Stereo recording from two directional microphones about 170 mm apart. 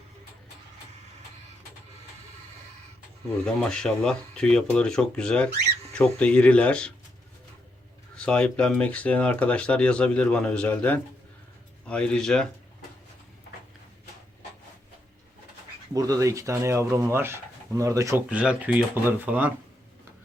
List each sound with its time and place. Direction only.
3.4 s speech: 5° left (ahead or behind)
8.1 s speech: 5° left (ahead or behind)
16.0 s speech: 20° right (ahead or behind)
18.3 s speech: 5° right (ahead or behind)